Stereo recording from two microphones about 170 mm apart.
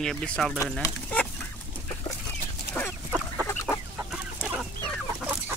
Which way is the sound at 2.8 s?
10° left (ahead or behind).